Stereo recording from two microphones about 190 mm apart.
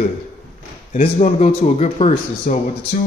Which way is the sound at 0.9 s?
35° left (ahead or behind).